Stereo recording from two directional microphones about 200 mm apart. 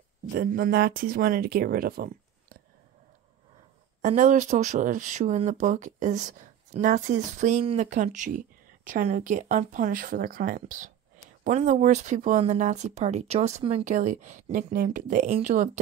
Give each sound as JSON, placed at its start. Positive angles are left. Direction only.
{"t": 0.3, "sound": "speech", "side_deg": -45}
{"t": 4.0, "sound": "speech", "side_deg": -40}